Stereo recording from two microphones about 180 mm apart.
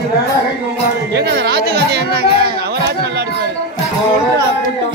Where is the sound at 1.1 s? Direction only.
65° right (ahead or behind).